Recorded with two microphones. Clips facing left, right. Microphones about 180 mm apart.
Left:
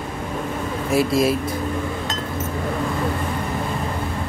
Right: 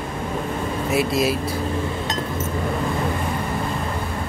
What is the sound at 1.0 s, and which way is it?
Speech, 25° left (ahead or behind).